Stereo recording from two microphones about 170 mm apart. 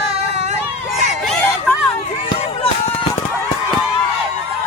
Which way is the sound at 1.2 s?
Centre (ahead or behind).